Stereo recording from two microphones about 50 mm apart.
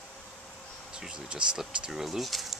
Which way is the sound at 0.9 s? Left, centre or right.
Centre.